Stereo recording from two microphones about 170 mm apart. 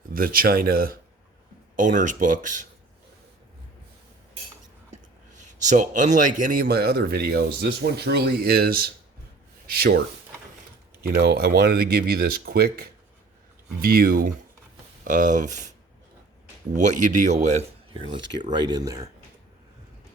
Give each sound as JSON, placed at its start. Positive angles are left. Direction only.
{"t": 0.1, "sound": "a man's voice", "side_deg": -55}
{"t": 1.7, "sound": "speech", "side_deg": -50}
{"t": 5.4, "sound": "a man's voice", "side_deg": -45}
{"t": 11.0, "sound": "a man's voice", "side_deg": -70}
{"t": 16.7, "sound": "speech", "side_deg": -45}
{"t": 18.1, "sound": "speech", "side_deg": -25}